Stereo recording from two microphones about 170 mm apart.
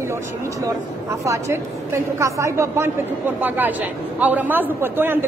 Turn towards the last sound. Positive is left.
turn(degrees=-15)  # may be behind; listen again after turning